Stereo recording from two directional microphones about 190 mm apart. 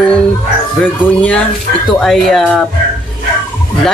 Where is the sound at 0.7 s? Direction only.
5° left (ahead or behind).